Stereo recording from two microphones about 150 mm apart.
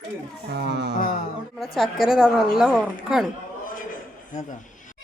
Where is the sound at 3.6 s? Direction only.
65° left (ahead or behind).